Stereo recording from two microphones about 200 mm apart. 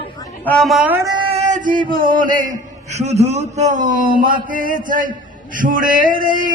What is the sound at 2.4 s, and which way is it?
A man's voice, 35° right (ahead or behind).